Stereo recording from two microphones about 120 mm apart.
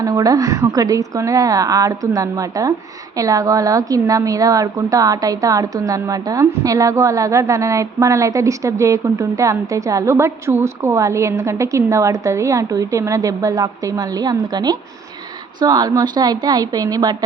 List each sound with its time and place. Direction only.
0.0 s a woman's voice: 30° right (ahead or behind)